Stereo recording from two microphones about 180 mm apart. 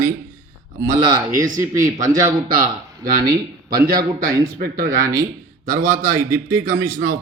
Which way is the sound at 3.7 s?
20° right (ahead or behind).